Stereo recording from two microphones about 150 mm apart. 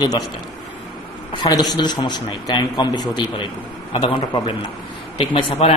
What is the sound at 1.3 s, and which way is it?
A man's voice, 30° left (ahead or behind).